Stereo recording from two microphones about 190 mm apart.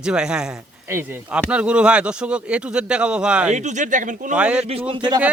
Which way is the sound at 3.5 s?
40° right (ahead or behind).